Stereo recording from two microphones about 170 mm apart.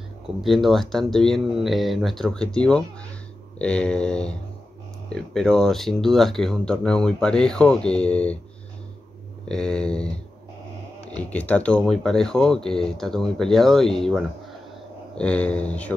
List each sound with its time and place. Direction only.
0.4 s speech: centre (ahead or behind)
9.5 s speech: 5° left (ahead or behind)